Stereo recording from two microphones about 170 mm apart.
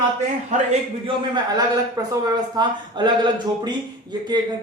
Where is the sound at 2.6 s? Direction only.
25° right (ahead or behind).